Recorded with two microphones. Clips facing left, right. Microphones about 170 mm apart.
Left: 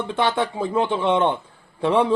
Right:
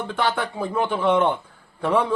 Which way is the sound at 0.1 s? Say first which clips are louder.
Left 3 dB; 25° left (ahead or behind).